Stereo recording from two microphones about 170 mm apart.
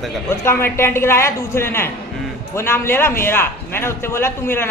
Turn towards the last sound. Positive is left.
turn(degrees=15)  # may be behind; listen again after turning